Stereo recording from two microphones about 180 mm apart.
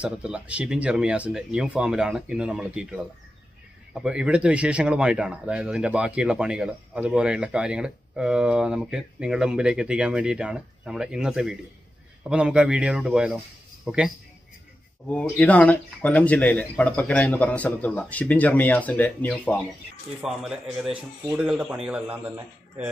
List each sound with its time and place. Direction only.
0.0 s speech: 5° right (ahead or behind)
15.0 s speech: 10° left (ahead or behind)